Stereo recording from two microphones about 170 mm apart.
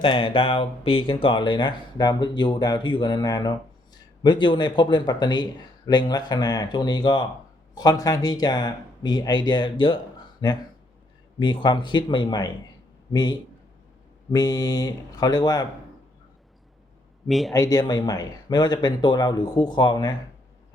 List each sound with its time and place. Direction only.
0.0 s speech: 30° left (ahead or behind)
17.2 s speech: centre (ahead or behind)
17.5 s speech: 20° left (ahead or behind)